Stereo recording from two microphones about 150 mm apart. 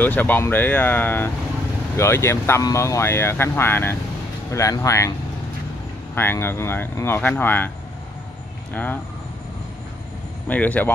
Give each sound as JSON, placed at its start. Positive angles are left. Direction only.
{"t": 0.0, "sound": "speech", "side_deg": 10}
{"t": 6.1, "sound": "speech", "side_deg": 15}
{"t": 8.7, "sound": "speech", "side_deg": 10}
{"t": 10.5, "sound": "speech", "side_deg": 10}